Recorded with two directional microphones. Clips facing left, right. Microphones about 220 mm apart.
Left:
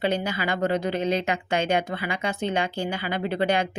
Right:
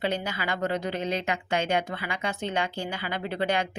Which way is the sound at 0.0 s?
20° left (ahead or behind).